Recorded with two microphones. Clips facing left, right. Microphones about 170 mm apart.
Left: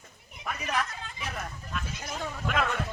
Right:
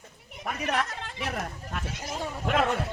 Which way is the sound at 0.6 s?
70° right (ahead or behind).